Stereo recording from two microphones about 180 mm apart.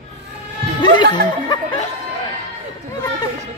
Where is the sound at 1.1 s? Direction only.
25° left (ahead or behind).